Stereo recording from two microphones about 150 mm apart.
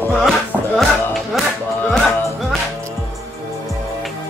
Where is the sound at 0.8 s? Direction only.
Centre (ahead or behind).